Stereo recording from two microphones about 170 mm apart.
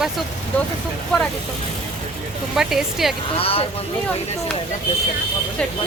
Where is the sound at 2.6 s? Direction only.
Centre (ahead or behind).